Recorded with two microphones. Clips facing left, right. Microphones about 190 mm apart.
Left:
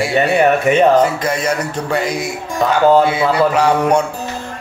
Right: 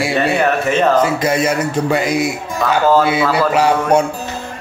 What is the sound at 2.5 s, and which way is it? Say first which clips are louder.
Speech: left 2 dB; 15° left (ahead or behind).